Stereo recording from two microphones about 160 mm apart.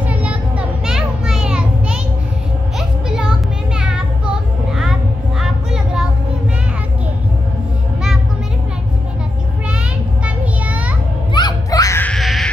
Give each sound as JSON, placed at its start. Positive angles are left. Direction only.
{"t": 0.0, "sound": "children playing", "side_deg": -10}
{"t": 3.1, "sound": "a sound", "side_deg": -5}
{"t": 5.4, "sound": "child singing", "side_deg": -5}
{"t": 10.2, "sound": "child singing", "side_deg": -10}
{"t": 11.3, "sound": "music", "side_deg": 25}
{"t": 12.1, "sound": "music", "side_deg": 0}